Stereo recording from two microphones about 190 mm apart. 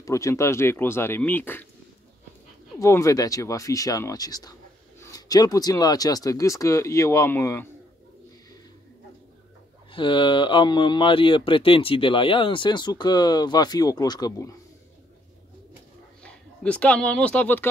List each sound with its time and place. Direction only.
0.0 s speech: 15° left (ahead or behind)
2.8 s speech: 15° left (ahead or behind)
9.9 s speech: 25° left (ahead or behind)
16.2 s speech: 5° left (ahead or behind)